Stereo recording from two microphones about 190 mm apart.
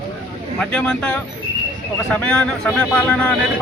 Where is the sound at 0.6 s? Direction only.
5° left (ahead or behind).